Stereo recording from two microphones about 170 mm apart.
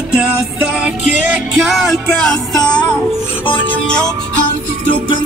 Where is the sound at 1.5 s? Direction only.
Centre (ahead or behind).